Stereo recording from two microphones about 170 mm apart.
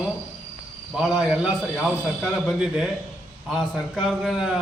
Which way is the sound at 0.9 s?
Centre (ahead or behind).